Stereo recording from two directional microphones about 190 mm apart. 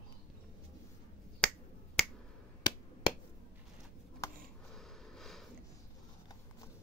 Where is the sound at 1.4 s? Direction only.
5° left (ahead or behind).